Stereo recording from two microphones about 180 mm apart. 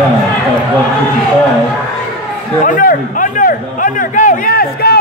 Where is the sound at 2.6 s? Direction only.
50° left (ahead or behind).